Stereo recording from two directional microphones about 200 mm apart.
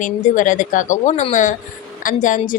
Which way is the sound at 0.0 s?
40° left (ahead or behind).